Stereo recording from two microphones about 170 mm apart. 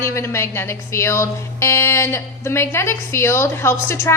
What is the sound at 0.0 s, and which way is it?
Speech, 15° left (ahead or behind).